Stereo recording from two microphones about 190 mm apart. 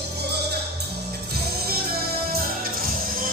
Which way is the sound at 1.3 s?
55° right (ahead or behind).